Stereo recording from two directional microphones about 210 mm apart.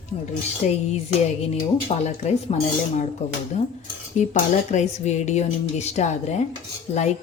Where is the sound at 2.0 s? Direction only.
30° left (ahead or behind).